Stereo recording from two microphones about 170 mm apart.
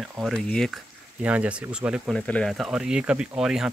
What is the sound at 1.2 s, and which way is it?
Speech, 5° right (ahead or behind).